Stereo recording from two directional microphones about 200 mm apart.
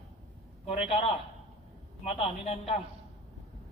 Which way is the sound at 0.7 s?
30° left (ahead or behind).